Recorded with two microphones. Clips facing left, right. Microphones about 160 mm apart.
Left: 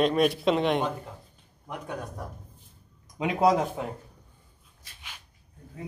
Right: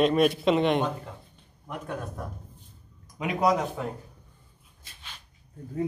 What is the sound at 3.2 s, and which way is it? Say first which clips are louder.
Speech: left 2 dB; 25° left (ahead or behind).